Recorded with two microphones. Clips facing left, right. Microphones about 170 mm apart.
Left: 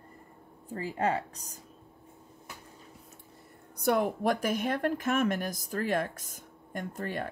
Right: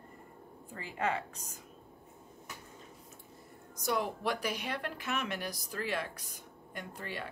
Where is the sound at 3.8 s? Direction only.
55° left (ahead or behind).